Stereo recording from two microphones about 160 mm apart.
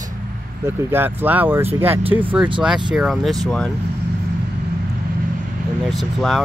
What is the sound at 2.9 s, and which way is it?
Speech, centre (ahead or behind).